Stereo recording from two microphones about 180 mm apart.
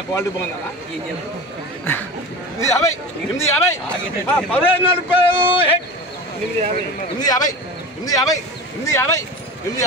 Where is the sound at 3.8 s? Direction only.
10° left (ahead or behind).